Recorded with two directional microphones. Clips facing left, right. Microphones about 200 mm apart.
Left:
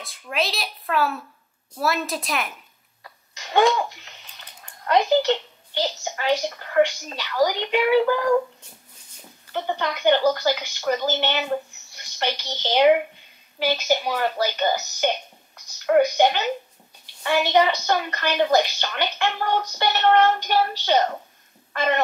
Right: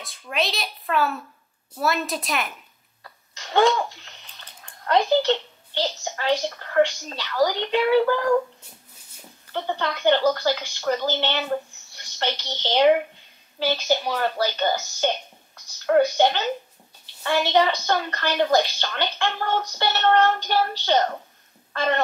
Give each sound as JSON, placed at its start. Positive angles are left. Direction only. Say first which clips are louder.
{"t": 0.0, "sound": "speech", "louder": "even", "side_deg": 0}
{"t": 3.0, "sound": "sneeze", "louder": "left 1 dB", "side_deg": 15}
{"t": 4.8, "sound": "a child's voice", "louder": "left 1 dB", "side_deg": 15}